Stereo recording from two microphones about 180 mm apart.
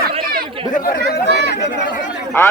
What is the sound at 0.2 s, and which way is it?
Chatter, 55° right (ahead or behind).